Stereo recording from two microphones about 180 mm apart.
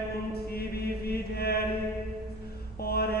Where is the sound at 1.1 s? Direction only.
60° left (ahead or behind).